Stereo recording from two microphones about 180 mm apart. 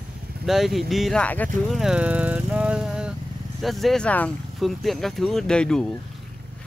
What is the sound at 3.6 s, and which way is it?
Speech, centre (ahead or behind).